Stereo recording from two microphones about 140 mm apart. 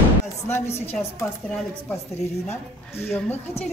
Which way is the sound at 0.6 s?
50° left (ahead or behind).